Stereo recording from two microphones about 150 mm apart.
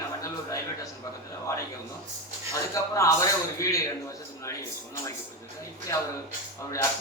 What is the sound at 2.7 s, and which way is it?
A man's voice, 20° left (ahead or behind).